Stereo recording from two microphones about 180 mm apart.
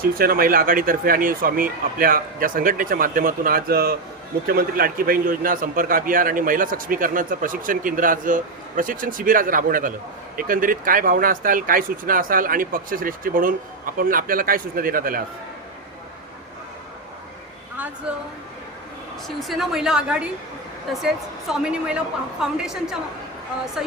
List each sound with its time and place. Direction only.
0.0 s a man's voice: 55° right (ahead or behind)
19.4 s a woman's voice: centre (ahead or behind)